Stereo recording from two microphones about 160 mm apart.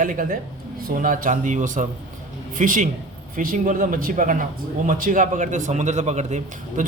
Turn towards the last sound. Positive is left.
turn(degrees=-50)  # may be behind; listen again after turning